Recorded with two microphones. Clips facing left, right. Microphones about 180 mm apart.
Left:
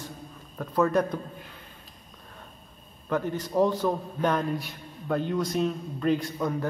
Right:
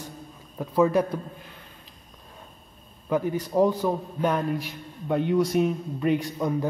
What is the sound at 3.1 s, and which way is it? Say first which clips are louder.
A man's voice: right 3 dB; 10° right (ahead or behind).